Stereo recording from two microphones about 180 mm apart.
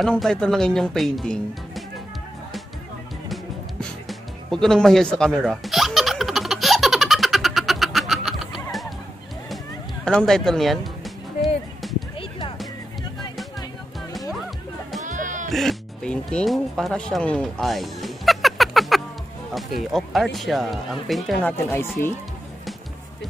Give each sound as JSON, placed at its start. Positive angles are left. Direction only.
{"t": 0.0, "sound": "speech", "side_deg": 5}
{"t": 4.1, "sound": "music", "side_deg": 5}
{"t": 10.0, "sound": "speech", "side_deg": 5}
{"t": 11.8, "sound": "a sound", "side_deg": 0}
{"t": 12.2, "sound": "music", "side_deg": 30}
{"t": 15.0, "sound": "music", "side_deg": -45}
{"t": 15.5, "sound": "speech", "side_deg": 5}